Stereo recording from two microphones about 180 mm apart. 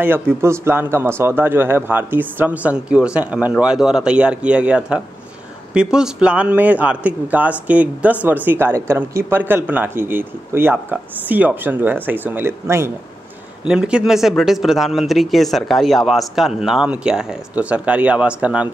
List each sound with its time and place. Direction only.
0.0 s a man's voice: 15° right (ahead or behind)